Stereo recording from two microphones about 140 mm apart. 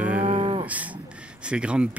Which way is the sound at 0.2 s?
55° right (ahead or behind).